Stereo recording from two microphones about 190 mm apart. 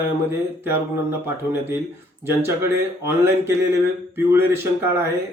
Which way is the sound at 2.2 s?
10° right (ahead or behind).